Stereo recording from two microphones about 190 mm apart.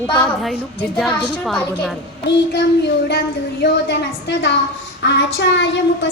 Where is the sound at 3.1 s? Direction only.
60° left (ahead or behind).